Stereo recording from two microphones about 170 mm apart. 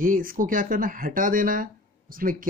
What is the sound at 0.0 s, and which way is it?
Speech, 55° right (ahead or behind).